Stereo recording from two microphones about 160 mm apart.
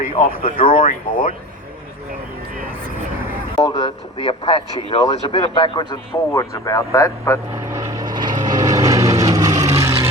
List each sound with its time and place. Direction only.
0.1 s speech: 35° left (ahead or behind)
3.6 s speech: 30° left (ahead or behind)
7.7 s vehicle: 20° right (ahead or behind)